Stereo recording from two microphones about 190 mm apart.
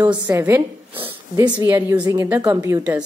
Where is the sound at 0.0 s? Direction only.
20° right (ahead or behind).